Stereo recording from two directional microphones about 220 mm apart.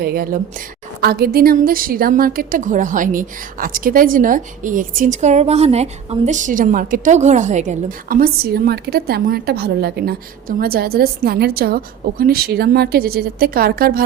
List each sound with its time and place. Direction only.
0.0 s a woman's voice: 45° right (ahead or behind)